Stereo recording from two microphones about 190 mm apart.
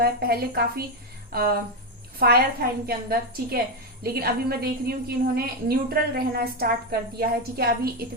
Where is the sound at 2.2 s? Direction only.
55° right (ahead or behind).